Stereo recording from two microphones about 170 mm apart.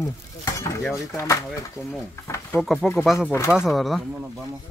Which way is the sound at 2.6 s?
5° right (ahead or behind).